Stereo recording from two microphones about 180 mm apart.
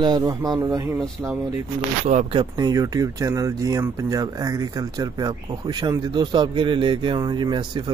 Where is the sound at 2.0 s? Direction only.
35° right (ahead or behind).